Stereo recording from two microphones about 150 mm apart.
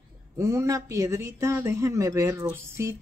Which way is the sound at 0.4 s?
20° right (ahead or behind).